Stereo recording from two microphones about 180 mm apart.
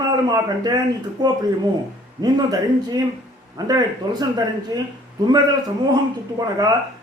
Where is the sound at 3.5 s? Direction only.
20° right (ahead or behind).